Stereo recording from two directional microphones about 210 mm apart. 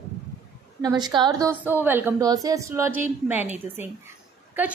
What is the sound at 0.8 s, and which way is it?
Speech, 20° right (ahead or behind).